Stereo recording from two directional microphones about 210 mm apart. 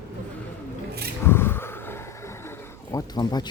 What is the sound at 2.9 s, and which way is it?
Speech, 20° left (ahead or behind).